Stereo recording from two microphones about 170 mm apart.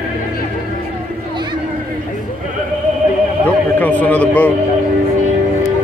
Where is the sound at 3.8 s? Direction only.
10° left (ahead or behind).